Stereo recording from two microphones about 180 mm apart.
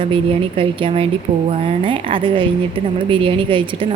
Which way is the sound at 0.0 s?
30° right (ahead or behind).